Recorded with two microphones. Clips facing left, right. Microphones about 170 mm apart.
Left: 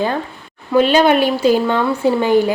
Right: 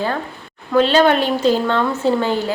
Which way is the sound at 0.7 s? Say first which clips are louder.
Left 1 dB; 15° left (ahead or behind).